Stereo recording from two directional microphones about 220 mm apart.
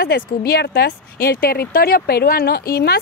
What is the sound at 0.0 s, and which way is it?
Speech, 45° left (ahead or behind).